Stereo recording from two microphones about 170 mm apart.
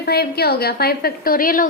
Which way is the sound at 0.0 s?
65° left (ahead or behind).